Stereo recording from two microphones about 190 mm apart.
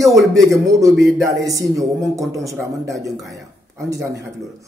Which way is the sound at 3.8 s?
15° right (ahead or behind).